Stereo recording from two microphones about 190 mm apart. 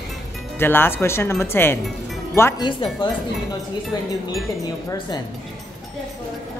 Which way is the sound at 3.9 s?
20° left (ahead or behind).